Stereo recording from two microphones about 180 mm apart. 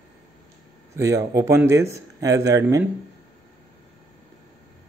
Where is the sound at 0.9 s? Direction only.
15° right (ahead or behind).